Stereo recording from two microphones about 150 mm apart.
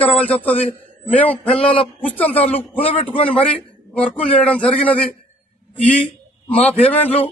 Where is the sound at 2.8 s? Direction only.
40° left (ahead or behind).